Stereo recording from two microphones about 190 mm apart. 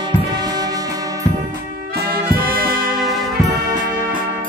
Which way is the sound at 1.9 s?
50° right (ahead or behind).